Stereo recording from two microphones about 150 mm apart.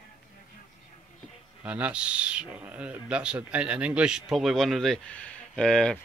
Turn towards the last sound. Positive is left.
turn(degrees=5)  # may be behind; listen again after turning